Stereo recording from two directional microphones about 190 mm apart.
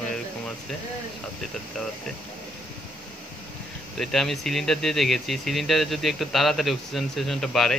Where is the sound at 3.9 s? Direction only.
Centre (ahead or behind).